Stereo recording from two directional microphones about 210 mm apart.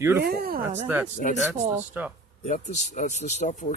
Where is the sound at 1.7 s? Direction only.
10° right (ahead or behind).